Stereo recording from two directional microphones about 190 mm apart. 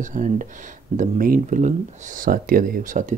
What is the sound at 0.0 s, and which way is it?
Speech, 40° right (ahead or behind).